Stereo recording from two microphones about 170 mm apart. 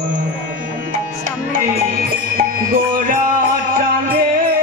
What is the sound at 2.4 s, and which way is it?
Music, 55° right (ahead or behind).